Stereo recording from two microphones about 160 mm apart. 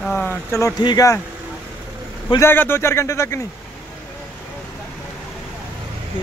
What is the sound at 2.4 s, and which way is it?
Speech, 15° left (ahead or behind).